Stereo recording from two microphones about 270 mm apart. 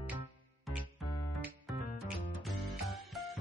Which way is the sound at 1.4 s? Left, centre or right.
Centre.